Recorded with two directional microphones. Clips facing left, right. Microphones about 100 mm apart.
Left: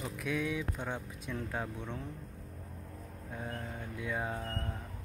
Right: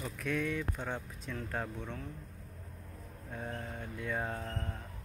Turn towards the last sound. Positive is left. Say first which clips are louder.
# left 1 dB
turn(degrees=5)  # may be behind; listen again after turning